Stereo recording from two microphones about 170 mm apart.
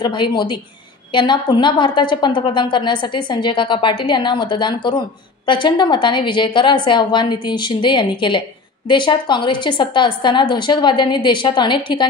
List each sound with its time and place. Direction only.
0.0 s a woman's voice: 25° left (ahead or behind)